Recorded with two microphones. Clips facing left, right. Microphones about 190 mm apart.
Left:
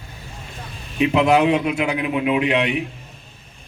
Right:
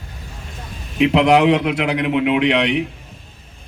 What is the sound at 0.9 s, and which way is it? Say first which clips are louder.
A man's voice: right 3 dB; 80° right.